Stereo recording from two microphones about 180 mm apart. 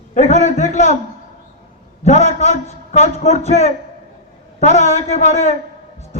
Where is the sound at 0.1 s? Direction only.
40° left (ahead or behind).